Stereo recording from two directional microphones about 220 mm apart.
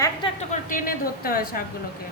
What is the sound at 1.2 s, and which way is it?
Speech, 45° left (ahead or behind).